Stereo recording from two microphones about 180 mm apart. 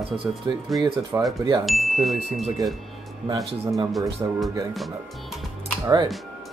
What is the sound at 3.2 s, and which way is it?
Speech, 20° right (ahead or behind).